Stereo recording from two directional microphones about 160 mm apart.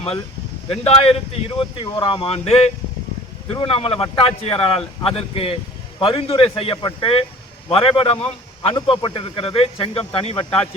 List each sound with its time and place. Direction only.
0.7 s speech: 40° left (ahead or behind)